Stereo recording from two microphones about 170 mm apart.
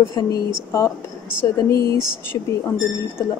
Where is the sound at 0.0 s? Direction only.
20° left (ahead or behind).